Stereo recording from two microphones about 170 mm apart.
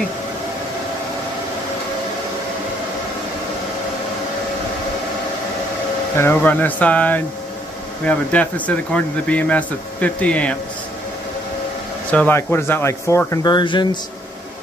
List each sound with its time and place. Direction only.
6.1 s speech: 10° left (ahead or behind)
12.1 s speech: 10° left (ahead or behind); by 13.8 s 25° left (ahead or behind)